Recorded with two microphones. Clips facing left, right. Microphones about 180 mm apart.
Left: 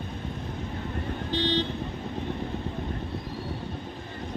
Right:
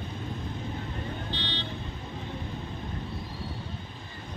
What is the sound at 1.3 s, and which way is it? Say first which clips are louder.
Vehicle: left 10 dB; 45° left (ahead or behind).